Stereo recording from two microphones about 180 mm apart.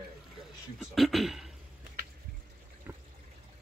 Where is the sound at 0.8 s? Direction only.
Centre (ahead or behind).